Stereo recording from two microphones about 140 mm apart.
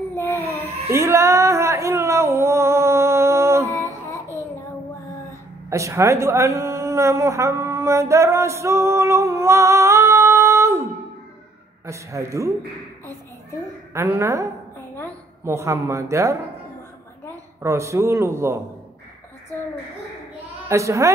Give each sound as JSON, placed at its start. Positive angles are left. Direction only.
{"t": 0.1, "sound": "a sound", "side_deg": 15}
{"t": 0.7, "sound": "a sound", "side_deg": -20}
{"t": 5.7, "sound": "a woman's voice", "side_deg": -20}
{"t": 13.9, "sound": "a man's voice", "side_deg": -20}
{"t": 17.6, "sound": "a man's voice", "side_deg": -20}
{"t": 20.6, "sound": "a woman's voice", "side_deg": -20}